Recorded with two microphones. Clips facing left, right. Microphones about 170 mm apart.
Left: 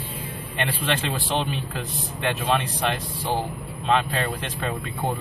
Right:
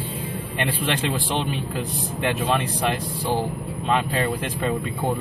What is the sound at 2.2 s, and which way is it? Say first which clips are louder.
Speech: right 1 dB; 10° right (ahead or behind).